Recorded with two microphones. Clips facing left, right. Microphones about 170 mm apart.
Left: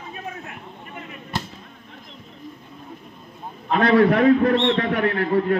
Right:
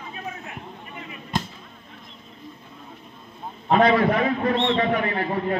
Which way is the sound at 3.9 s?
65° left (ahead or behind).